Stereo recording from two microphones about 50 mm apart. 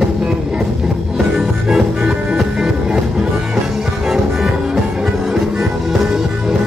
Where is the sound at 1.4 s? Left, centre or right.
Centre.